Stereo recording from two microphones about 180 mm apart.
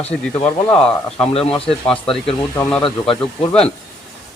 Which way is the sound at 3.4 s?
5° left (ahead or behind).